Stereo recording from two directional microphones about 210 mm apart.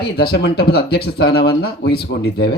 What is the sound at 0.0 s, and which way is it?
Speech, 50° left (ahead or behind).